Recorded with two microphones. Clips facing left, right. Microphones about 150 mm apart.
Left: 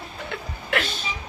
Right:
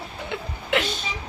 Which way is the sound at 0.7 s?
20° right (ahead or behind).